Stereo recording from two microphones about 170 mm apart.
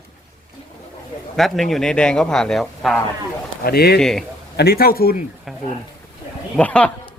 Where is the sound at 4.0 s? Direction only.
5° left (ahead or behind).